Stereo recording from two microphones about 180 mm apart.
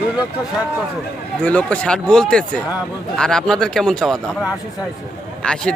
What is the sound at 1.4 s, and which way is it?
A man's voice, 5° left (ahead or behind).